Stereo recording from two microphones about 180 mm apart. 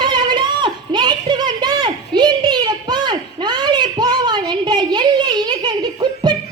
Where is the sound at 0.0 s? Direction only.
25° right (ahead or behind).